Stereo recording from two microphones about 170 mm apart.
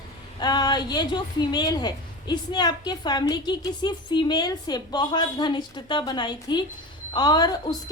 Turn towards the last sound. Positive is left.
turn(degrees=25)  # may be behind; listen again after turning